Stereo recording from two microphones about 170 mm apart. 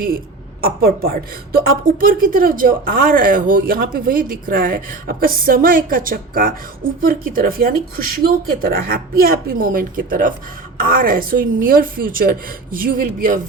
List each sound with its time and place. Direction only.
0.6 s a woman's voice: 60° right (ahead or behind)